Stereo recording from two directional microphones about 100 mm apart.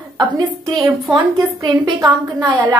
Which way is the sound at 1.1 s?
40° right (ahead or behind).